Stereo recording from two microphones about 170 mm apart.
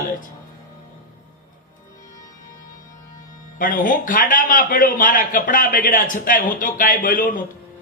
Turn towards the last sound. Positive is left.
turn(degrees=50)  # may be behind; listen again after turning